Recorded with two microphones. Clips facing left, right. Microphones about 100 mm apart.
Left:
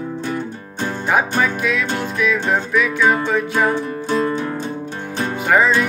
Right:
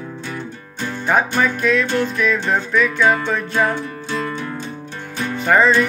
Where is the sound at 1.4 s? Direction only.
5° left (ahead or behind).